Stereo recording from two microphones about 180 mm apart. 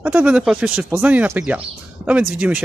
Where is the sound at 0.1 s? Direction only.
5° right (ahead or behind).